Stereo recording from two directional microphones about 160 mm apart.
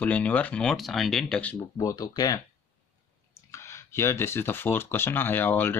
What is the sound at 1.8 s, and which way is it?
Speech, 20° left (ahead or behind).